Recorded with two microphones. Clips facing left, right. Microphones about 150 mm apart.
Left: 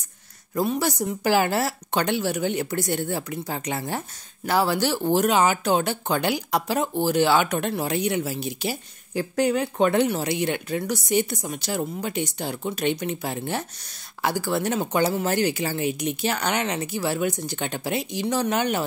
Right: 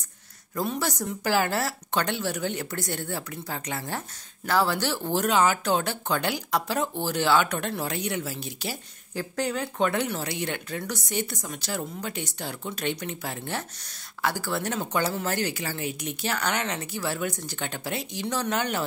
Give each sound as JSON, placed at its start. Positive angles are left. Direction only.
{"t": 0.6, "sound": "speech", "side_deg": 10}